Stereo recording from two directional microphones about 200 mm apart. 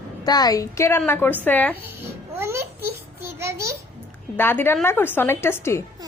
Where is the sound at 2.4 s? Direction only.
10° right (ahead or behind).